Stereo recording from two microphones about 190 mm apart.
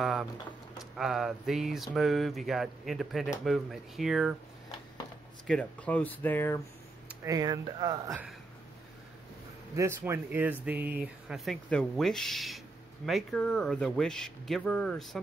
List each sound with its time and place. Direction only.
0.0 s a sound: centre (ahead or behind)
0.7 s speech: centre (ahead or behind)
5.5 s speech: 5° left (ahead or behind)
7.2 s speech: 20° right (ahead or behind)
9.8 s speech: 15° right (ahead or behind); by 15.0 s 5° left (ahead or behind)